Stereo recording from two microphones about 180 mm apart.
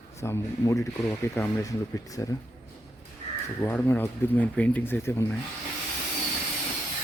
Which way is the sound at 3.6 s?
10° left (ahead or behind).